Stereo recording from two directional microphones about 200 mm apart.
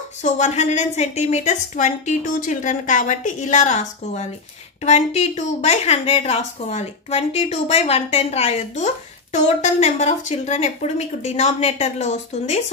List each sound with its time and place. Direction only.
0.2 s a woman's voice: 35° left (ahead or behind)